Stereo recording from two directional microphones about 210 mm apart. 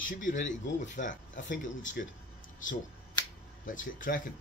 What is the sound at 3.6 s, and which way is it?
Speech, 40° left (ahead or behind).